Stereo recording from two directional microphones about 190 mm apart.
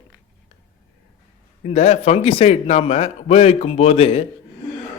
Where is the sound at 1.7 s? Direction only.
35° left (ahead or behind).